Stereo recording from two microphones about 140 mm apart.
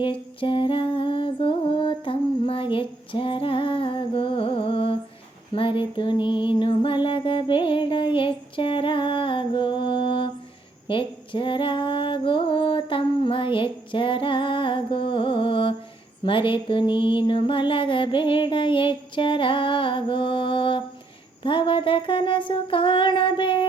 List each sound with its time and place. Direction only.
0.0 s humming: 35° left (ahead or behind)
5.5 s music: 40° left (ahead or behind)
10.8 s female singing: 35° left (ahead or behind)
16.2 s music: 35° left (ahead or behind)